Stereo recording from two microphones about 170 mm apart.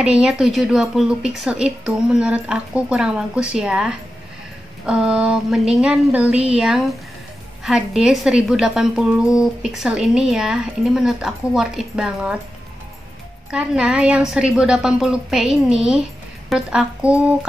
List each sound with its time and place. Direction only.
0.0 s a woman's voice: 5° right (ahead or behind)
13.5 s a woman's voice: 5° right (ahead or behind)